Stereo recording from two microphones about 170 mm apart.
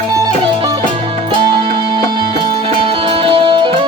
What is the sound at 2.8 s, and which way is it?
Music, 30° right (ahead or behind).